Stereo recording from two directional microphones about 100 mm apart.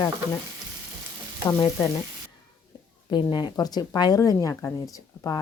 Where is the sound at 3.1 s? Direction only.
45° left (ahead or behind).